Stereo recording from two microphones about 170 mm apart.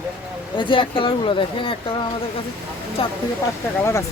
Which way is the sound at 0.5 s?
30° left (ahead or behind).